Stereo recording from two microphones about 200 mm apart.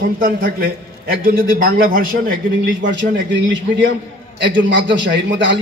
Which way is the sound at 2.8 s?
65° right (ahead or behind).